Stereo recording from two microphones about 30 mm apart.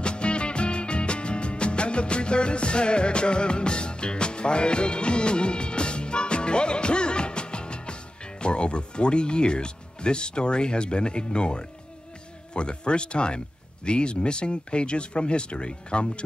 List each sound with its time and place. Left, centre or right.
0.0 s music: left
12.5 s speech: left